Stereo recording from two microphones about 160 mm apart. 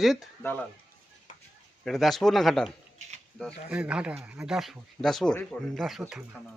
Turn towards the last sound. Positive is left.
turn(degrees=-5)  # may be behind; listen again after turning